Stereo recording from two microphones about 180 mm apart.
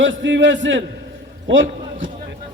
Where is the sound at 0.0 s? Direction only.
90° right.